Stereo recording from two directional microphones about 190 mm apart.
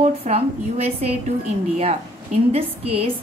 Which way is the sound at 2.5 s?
30° right (ahead or behind).